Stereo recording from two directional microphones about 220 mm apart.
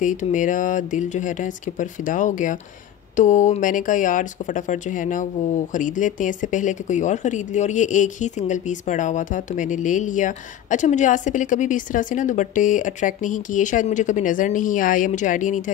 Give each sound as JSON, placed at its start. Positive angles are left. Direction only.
{"t": 0.0, "sound": "speech", "side_deg": 35}